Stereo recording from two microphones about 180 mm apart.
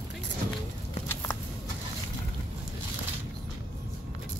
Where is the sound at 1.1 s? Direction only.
15° left (ahead or behind).